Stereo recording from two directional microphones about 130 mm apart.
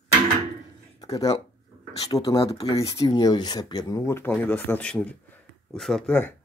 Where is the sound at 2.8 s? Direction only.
30° left (ahead or behind).